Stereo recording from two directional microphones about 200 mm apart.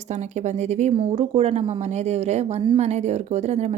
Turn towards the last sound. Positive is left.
turn(degrees=-35)  # may be behind; listen again after turning